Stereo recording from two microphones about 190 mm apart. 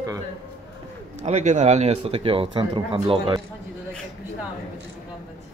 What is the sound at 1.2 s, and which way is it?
Speech, 35° right (ahead or behind).